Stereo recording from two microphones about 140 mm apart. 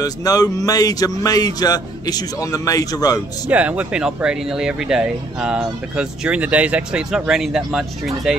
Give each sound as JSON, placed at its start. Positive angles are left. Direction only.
{"t": 0.0, "sound": "speech", "side_deg": 25}
{"t": 3.4, "sound": "speech", "side_deg": -10}